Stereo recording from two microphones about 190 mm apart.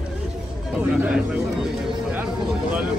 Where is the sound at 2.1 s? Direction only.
5° right (ahead or behind).